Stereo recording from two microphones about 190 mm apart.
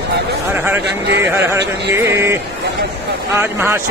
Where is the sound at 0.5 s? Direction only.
10° right (ahead or behind).